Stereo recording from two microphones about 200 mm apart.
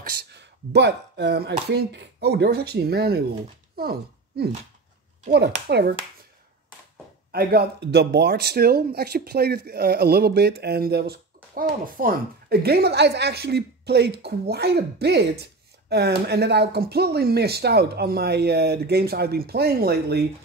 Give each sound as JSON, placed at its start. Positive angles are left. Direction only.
{"t": 0.2, "sound": "speech", "side_deg": -60}
{"t": 7.3, "sound": "speech", "side_deg": -55}